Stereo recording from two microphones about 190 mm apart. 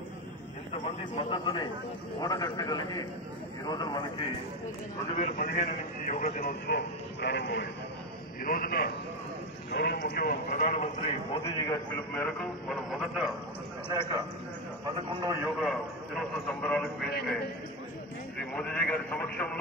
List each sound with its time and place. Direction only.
0.8 s a man's voice: 30° left (ahead or behind)
5.1 s a man's voice: 40° left (ahead or behind)
7.2 s a man's voice: 60° left (ahead or behind)
8.5 s a man's voice: 50° left (ahead or behind)
11.3 s a man's voice: 15° left (ahead or behind); by 13.3 s 5° right (ahead or behind)
15.0 s a man's voice: 25° right (ahead or behind)
15.4 s a man's voice: centre (ahead or behind)
18.4 s a man's voice: 5° left (ahead or behind)